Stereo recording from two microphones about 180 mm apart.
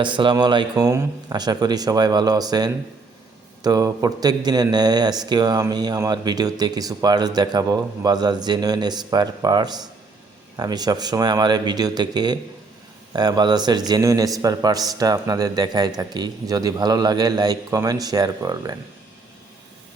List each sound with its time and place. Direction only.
0.0 s a man's voice: 25° right (ahead or behind)